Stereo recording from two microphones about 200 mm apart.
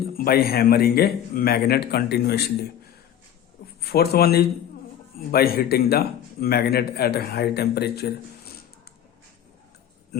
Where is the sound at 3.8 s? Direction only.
50° left (ahead or behind).